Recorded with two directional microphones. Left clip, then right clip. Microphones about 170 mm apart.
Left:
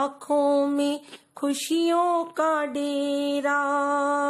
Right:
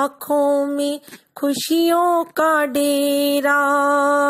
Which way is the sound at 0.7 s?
20° right (ahead or behind).